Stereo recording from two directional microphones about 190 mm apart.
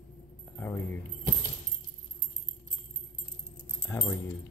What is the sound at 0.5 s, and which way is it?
Speech, 10° left (ahead or behind).